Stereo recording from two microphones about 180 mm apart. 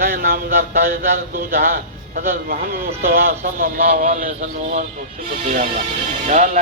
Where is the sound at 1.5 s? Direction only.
55° right (ahead or behind).